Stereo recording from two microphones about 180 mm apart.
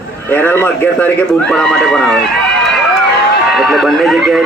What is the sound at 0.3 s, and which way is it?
A man's voice, 10° left (ahead or behind).